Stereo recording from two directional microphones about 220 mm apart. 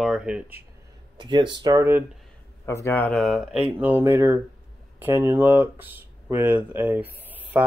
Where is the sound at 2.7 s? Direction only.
10° left (ahead or behind).